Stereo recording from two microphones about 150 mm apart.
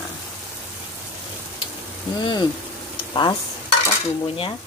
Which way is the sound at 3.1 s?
30° left (ahead or behind).